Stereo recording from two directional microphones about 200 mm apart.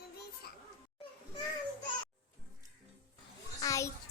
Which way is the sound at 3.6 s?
15° left (ahead or behind).